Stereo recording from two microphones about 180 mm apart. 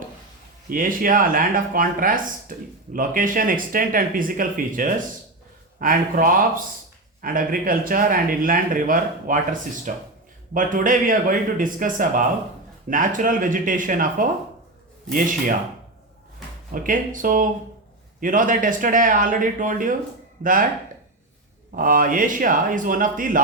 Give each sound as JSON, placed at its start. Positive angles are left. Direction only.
{"t": 0.7, "sound": "speech", "side_deg": -50}
{"t": 16.7, "sound": "speech", "side_deg": -50}
{"t": 21.8, "sound": "speech", "side_deg": -50}